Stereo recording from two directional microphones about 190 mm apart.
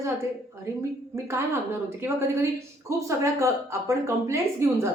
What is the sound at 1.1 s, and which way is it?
Speech, 15° right (ahead or behind).